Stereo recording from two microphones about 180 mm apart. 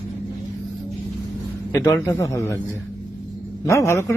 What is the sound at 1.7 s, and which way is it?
Speech, 20° left (ahead or behind).